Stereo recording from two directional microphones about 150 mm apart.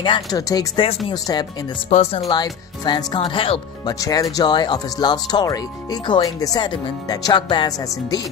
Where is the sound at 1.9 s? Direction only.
55° left (ahead or behind).